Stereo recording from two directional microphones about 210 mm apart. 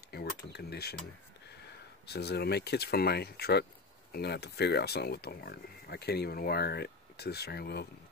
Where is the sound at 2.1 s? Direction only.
50° left (ahead or behind).